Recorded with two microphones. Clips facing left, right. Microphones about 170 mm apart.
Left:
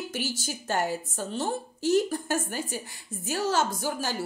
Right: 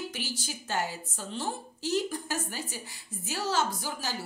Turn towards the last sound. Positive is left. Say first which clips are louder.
# left 5 dB
turn(degrees=50)  # may be behind; listen again after turning